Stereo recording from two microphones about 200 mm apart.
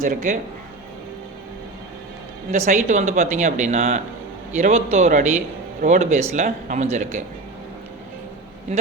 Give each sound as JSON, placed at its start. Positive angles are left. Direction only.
{"t": 0.0, "sound": "speech", "side_deg": -40}
{"t": 2.5, "sound": "speech", "side_deg": -40}